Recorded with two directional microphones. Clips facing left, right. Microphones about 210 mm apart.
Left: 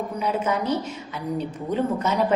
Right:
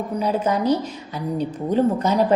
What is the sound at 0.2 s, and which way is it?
Speech, 35° right (ahead or behind).